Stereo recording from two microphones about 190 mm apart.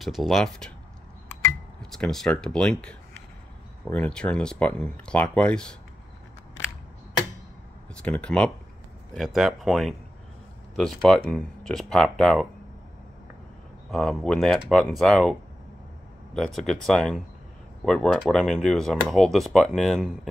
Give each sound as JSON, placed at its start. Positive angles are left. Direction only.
{"t": 0.0, "sound": "speech", "side_deg": 0}
{"t": 1.8, "sound": "speech", "side_deg": 5}
{"t": 7.9, "sound": "speech", "side_deg": 5}
{"t": 13.8, "sound": "speech", "side_deg": 0}
{"t": 16.5, "sound": "speech", "side_deg": 0}